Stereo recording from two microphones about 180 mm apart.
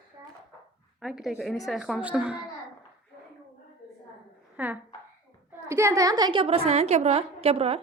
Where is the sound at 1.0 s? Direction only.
Centre (ahead or behind).